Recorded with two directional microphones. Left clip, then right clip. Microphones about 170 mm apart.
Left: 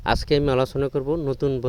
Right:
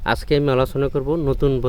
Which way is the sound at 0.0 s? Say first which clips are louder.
Right 2 dB; 45° left (ahead or behind).